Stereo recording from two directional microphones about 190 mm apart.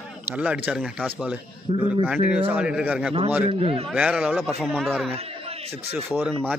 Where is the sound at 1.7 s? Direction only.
30° right (ahead or behind).